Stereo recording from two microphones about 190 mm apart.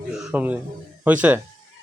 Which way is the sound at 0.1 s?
5° right (ahead or behind).